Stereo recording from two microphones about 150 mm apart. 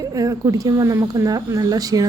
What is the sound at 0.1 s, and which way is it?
Speech, 25° right (ahead or behind).